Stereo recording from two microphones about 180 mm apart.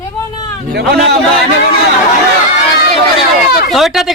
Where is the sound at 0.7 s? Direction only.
65° right (ahead or behind).